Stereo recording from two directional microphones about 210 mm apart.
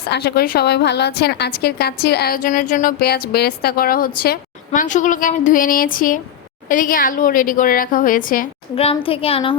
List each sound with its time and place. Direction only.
0.1 s a woman's voice: 50° left (ahead or behind)
8.7 s a woman's voice: 25° left (ahead or behind)